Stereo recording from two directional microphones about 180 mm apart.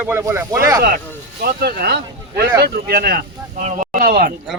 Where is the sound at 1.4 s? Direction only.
60° right (ahead or behind).